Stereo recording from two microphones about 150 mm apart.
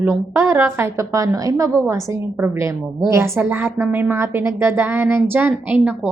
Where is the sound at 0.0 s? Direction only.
15° right (ahead or behind).